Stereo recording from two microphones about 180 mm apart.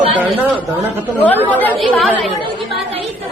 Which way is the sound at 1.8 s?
Centre (ahead or behind).